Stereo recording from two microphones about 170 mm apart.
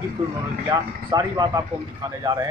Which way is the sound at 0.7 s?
25° right (ahead or behind).